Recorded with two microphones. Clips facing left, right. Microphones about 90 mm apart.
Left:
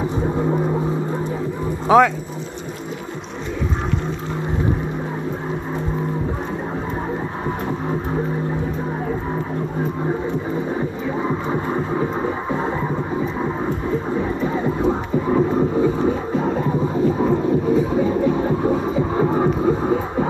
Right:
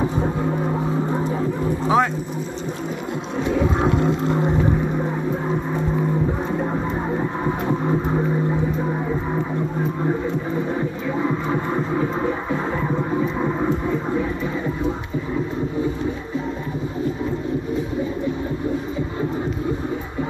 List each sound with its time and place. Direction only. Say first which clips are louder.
1.9 s speech: left 6 dB; 75° left (ahead or behind)
18.2 s heart murmur: left 6 dB; 65° left (ahead or behind)